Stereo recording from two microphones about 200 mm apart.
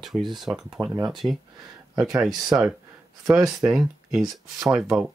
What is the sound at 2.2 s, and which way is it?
Speech, centre (ahead or behind).